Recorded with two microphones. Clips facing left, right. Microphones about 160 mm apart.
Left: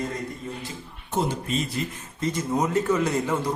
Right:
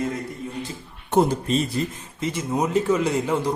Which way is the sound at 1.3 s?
35° right (ahead or behind).